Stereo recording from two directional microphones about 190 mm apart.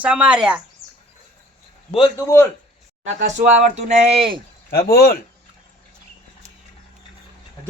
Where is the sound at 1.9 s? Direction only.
20° left (ahead or behind).